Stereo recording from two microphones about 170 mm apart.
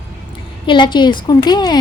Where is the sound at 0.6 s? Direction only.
25° left (ahead or behind).